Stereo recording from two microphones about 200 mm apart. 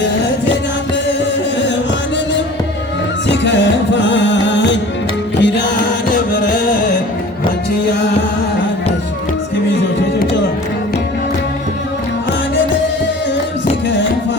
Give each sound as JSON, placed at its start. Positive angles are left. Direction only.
{"t": 3.2, "sound": "music", "side_deg": 60}